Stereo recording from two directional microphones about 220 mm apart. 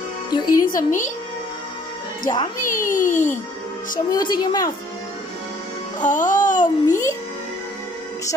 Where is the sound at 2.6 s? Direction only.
40° left (ahead or behind).